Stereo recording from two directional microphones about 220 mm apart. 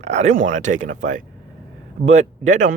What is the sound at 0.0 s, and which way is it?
Speech, 30° right (ahead or behind).